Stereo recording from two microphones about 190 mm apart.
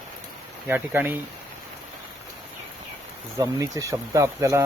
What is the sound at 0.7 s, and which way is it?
Speech, 10° right (ahead or behind).